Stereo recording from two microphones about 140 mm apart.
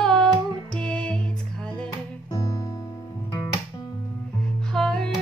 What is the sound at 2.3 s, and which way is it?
Music, 25° left (ahead or behind).